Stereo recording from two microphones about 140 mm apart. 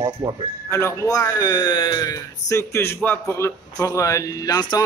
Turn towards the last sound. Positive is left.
turn(degrees=25)  # may be behind; listen again after turning